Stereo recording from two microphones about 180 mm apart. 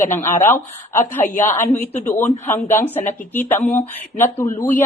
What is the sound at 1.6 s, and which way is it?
Speech, 10° left (ahead or behind).